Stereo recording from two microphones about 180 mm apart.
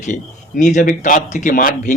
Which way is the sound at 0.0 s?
45° left (ahead or behind).